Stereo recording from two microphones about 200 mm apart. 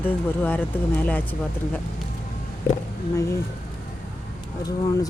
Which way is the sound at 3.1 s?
15° left (ahead or behind).